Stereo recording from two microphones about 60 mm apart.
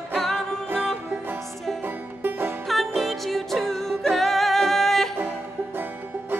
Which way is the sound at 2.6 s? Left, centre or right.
Centre.